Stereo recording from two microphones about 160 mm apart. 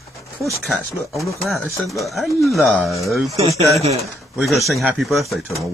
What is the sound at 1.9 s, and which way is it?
A man's voice, centre (ahead or behind).